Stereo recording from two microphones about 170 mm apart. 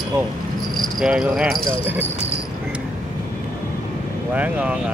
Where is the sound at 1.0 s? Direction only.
5° right (ahead or behind).